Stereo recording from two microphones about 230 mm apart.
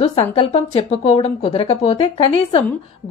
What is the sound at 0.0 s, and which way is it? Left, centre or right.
A woman's voice, left.